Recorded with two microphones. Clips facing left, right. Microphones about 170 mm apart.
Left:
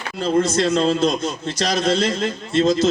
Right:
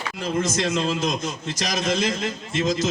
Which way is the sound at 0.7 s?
60° left (ahead or behind).